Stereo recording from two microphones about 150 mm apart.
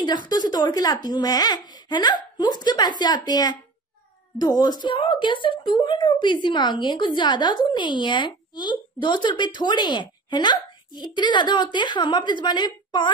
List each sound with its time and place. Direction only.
0.0 s a child's voice: 30° left (ahead or behind)